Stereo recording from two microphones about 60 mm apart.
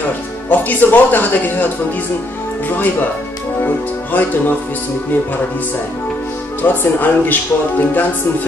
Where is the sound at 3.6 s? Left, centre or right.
Left.